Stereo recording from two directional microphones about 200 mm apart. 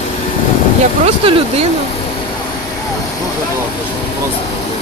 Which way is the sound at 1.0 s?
30° right (ahead or behind).